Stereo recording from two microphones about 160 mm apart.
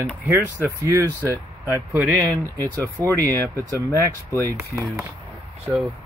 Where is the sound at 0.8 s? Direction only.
15° right (ahead or behind).